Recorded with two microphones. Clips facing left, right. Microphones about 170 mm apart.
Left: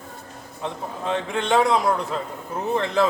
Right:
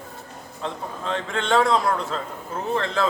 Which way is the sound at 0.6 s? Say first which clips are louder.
Left 1 dB; 15° left (ahead or behind).